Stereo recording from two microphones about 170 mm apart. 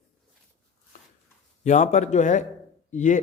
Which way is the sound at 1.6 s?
45° left (ahead or behind).